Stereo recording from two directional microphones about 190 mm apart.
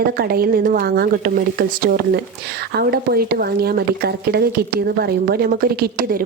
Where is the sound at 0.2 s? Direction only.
50° right (ahead or behind).